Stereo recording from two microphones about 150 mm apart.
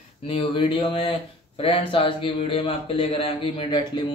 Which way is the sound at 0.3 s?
35° left (ahead or behind).